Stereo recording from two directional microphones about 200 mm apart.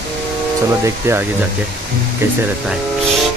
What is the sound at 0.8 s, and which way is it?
Speech, 15° right (ahead or behind).